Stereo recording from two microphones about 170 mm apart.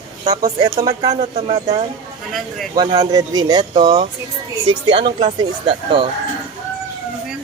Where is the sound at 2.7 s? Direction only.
30° right (ahead or behind).